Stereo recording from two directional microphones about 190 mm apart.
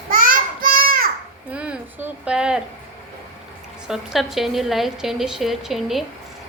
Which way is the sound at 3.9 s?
Centre (ahead or behind).